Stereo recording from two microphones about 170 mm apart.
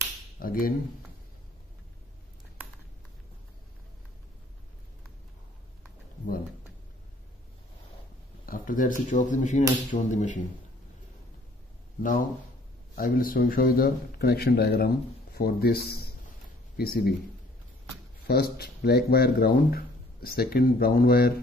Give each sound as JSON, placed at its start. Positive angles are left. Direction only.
{"t": 0.4, "sound": "speech", "side_deg": 55}
{"t": 8.5, "sound": "speech", "side_deg": 55}
{"t": 12.9, "sound": "speech", "side_deg": 55}
{"t": 18.2, "sound": "speech", "side_deg": 65}